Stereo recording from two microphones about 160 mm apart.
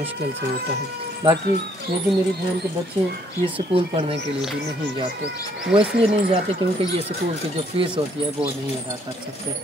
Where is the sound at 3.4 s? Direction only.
35° right (ahead or behind).